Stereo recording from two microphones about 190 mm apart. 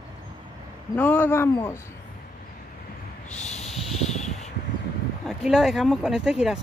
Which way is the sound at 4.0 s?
35° left (ahead or behind).